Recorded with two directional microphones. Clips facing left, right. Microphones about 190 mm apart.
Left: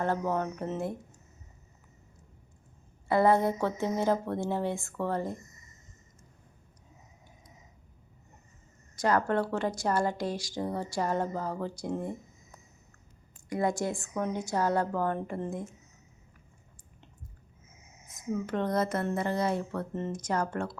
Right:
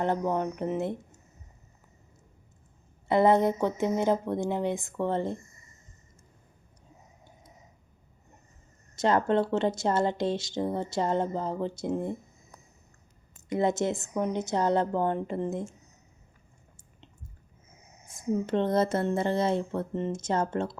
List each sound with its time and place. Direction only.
0.0 s speech: 15° right (ahead or behind)
3.1 s speech: 20° right (ahead or behind)
9.0 s speech: 25° right (ahead or behind)
13.5 s speech: 20° right (ahead or behind)
17.7 s speech: 35° right (ahead or behind)